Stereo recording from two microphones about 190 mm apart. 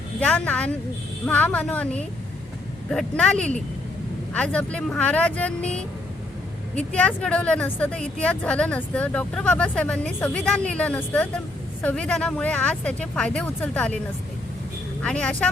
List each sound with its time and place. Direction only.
0.2 s speech: 5° left (ahead or behind)
3.3 s speech: 40° right (ahead or behind)
4.4 s speech: 5° left (ahead or behind)
15.0 s speech: 5° left (ahead or behind)